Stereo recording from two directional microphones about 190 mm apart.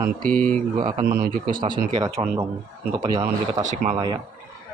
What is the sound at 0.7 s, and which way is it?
Speech, 40° right (ahead or behind).